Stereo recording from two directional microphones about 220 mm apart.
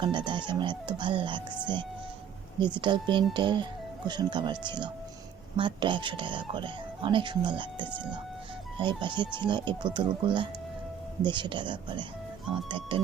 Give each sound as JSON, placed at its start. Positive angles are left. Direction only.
{"t": 0.0, "sound": "speech", "side_deg": -20}
{"t": 2.6, "sound": "speech", "side_deg": -20}